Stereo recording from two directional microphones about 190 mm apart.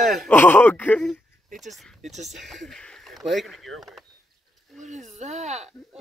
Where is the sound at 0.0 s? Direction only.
Centre (ahead or behind).